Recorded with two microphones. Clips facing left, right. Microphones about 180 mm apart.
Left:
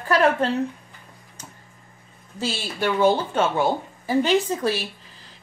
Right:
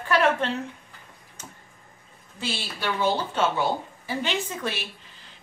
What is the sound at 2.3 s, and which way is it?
A woman's voice, 45° left (ahead or behind).